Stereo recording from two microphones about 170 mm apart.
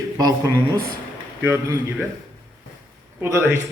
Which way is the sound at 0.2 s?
20° right (ahead or behind).